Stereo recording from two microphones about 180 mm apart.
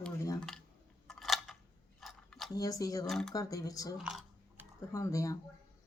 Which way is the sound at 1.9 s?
Centre (ahead or behind).